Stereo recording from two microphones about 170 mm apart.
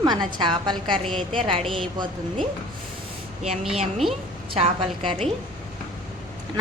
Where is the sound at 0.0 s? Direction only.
25° right (ahead or behind).